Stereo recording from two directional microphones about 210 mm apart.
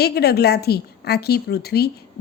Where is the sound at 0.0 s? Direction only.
50° left (ahead or behind).